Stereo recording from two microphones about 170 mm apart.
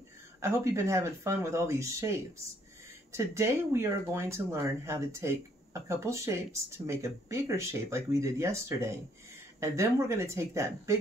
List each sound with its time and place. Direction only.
0.4 s speech: 15° right (ahead or behind)